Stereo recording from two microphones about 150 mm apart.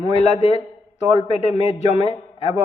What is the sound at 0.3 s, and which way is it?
A man's voice, 40° left (ahead or behind).